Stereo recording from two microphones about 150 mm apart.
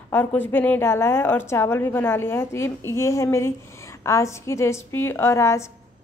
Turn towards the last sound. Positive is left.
turn(degrees=20)  # may be behind; listen again after turning